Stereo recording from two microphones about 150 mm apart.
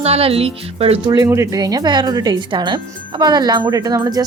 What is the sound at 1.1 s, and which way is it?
Speech, 20° right (ahead or behind).